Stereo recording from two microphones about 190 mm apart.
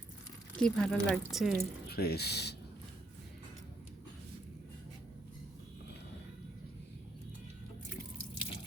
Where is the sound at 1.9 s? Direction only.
55° left (ahead or behind).